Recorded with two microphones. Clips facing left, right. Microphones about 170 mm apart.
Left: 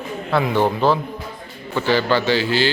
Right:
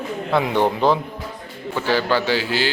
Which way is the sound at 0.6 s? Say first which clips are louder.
Even; 20° right (ahead or behind).